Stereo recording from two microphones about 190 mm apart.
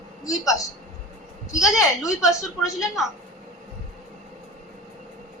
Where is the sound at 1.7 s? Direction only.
15° left (ahead or behind).